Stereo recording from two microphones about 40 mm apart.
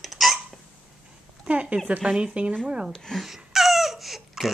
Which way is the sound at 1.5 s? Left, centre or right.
Right.